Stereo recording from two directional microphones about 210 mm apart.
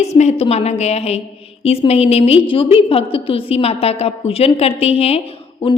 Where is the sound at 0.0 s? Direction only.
30° left (ahead or behind).